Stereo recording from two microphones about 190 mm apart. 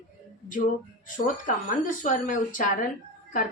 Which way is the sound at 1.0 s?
45° left (ahead or behind).